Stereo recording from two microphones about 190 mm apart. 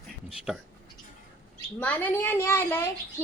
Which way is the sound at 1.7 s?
10° left (ahead or behind).